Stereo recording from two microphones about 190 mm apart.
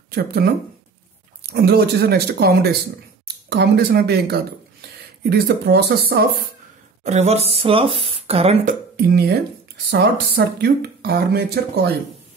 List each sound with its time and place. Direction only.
0.1 s speech: 55° right (ahead or behind)
1.5 s speech: 55° right (ahead or behind)
7.0 s speech: 35° right (ahead or behind)
8.0 s a sound: 30° right (ahead or behind)
8.6 s speech: 55° right (ahead or behind)